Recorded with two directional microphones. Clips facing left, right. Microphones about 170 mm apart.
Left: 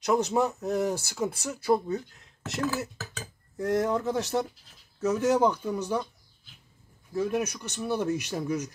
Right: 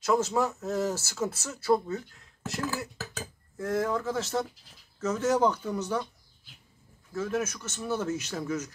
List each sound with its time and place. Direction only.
0.0 s speech: 20° left (ahead or behind)
7.2 s speech: 15° left (ahead or behind)